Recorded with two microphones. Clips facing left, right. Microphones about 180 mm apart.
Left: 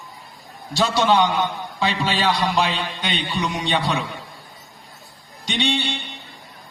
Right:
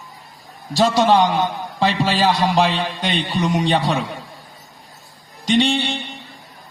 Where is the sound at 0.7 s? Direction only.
45° right (ahead or behind).